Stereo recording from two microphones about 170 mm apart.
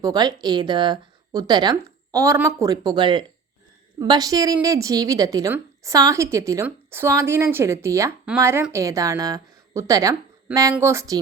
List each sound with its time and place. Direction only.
0.0 s a woman's voice: 25° right (ahead or behind)